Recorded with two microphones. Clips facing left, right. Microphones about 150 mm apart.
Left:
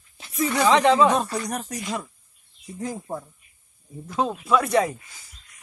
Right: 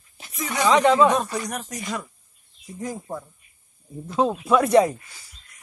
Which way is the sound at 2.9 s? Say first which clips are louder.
Right 1 dB; 10° left (ahead or behind).